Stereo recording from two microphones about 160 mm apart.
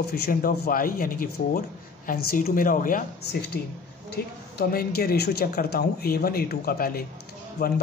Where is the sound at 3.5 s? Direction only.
75° left (ahead or behind).